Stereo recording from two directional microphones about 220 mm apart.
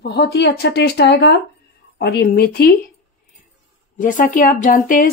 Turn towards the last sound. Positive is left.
turn(degrees=40)  # may be behind; listen again after turning